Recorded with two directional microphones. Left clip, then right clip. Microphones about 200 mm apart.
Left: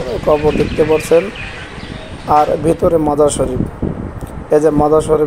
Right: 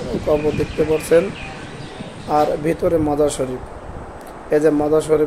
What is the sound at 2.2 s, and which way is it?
Speech, 25° left (ahead or behind).